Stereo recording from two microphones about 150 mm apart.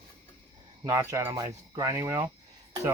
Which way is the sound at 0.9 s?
20° right (ahead or behind).